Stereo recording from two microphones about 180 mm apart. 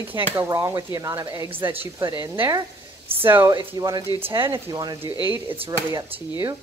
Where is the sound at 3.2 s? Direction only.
15° right (ahead or behind).